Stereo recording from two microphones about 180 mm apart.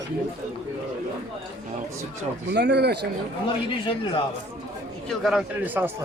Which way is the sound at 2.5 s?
70° right (ahead or behind).